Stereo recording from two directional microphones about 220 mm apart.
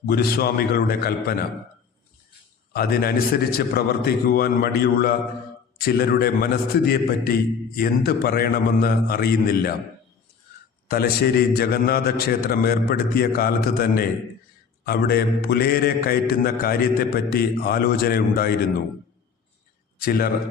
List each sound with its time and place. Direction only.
0.0 s a man's voice: 45° left (ahead or behind)
2.7 s a man's voice: 45° left (ahead or behind)
10.8 s a man's voice: 45° left (ahead or behind)
20.0 s a man's voice: 45° left (ahead or behind)